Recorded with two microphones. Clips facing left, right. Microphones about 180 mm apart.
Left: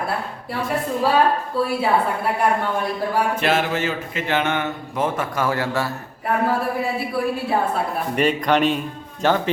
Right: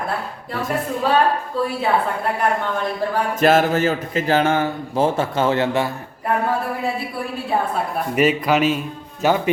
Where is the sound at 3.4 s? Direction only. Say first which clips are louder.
Right 5 dB; 40° right (ahead or behind); by 5.9 s 20° right (ahead or behind).